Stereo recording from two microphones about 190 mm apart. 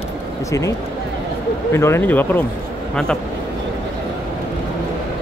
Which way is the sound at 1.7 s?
15° left (ahead or behind).